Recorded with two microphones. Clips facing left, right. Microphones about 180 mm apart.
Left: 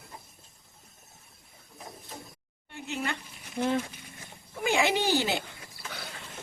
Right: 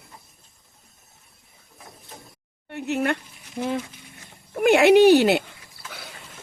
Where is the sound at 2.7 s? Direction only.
65° right (ahead or behind).